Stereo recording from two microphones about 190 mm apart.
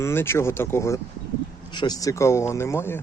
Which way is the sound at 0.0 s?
15° left (ahead or behind).